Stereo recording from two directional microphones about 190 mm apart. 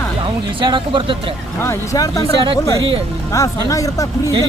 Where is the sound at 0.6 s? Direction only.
25° right (ahead or behind).